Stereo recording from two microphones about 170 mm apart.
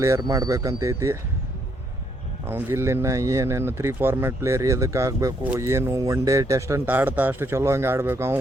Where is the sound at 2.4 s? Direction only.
15° right (ahead or behind).